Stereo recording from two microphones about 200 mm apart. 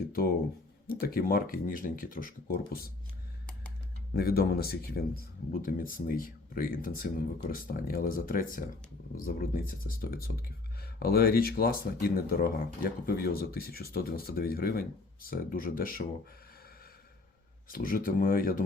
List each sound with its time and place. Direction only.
0.2 s speech: 45° left (ahead or behind)
4.1 s speech: 50° left (ahead or behind)
17.7 s speech: 45° left (ahead or behind)